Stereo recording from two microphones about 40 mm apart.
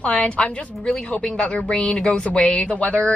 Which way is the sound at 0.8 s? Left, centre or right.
Left.